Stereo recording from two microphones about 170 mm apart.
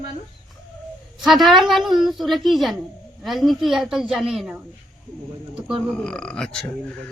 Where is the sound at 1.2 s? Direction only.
Centre (ahead or behind).